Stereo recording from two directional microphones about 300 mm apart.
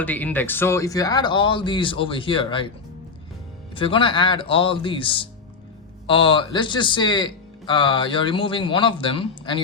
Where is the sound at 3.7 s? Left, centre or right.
Centre.